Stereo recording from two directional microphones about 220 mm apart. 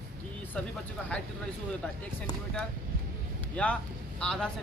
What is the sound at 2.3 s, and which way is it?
Speech, 20° left (ahead or behind).